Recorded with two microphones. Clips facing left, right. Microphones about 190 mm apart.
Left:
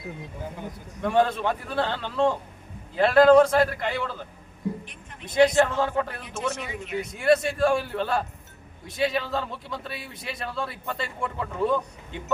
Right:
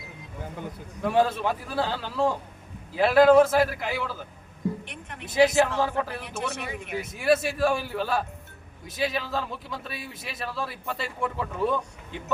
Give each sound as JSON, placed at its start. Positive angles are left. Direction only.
{"t": 1.0, "sound": "a man's voice", "side_deg": -5}
{"t": 4.9, "sound": "a sound", "side_deg": -70}
{"t": 5.2, "sound": "a man's voice", "side_deg": -5}
{"t": 6.2, "sound": "speech", "side_deg": -60}
{"t": 6.9, "sound": "a man's voice", "side_deg": -5}